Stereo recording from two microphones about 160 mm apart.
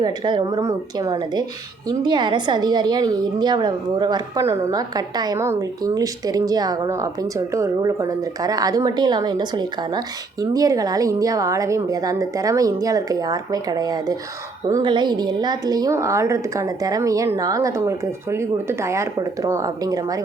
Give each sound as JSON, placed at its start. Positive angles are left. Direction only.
{"t": 0.0, "sound": "a woman's voice", "side_deg": -25}